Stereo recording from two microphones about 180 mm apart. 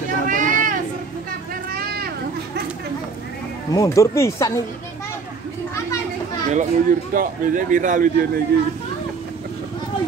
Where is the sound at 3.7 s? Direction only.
15° left (ahead or behind).